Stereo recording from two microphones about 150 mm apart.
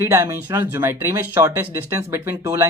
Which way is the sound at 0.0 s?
20° right (ahead or behind).